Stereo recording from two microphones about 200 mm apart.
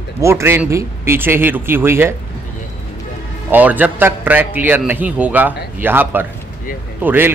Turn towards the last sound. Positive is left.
turn(degrees=-10)  # may be behind; listen again after turning